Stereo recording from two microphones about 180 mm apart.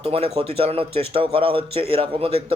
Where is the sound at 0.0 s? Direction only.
30° right (ahead or behind).